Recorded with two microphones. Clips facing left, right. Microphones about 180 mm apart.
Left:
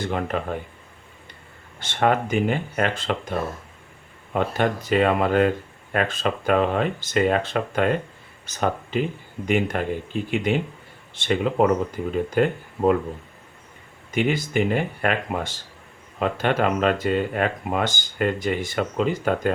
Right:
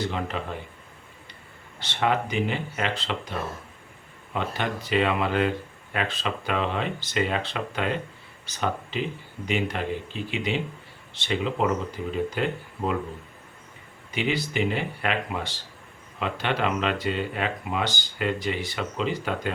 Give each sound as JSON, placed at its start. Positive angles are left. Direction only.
{"t": 0.0, "sound": "speech", "side_deg": 50}
{"t": 1.8, "sound": "speech", "side_deg": 50}
{"t": 14.1, "sound": "speech", "side_deg": 50}